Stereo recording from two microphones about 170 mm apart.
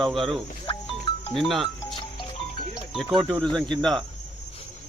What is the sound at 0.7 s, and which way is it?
Music, 25° left (ahead or behind).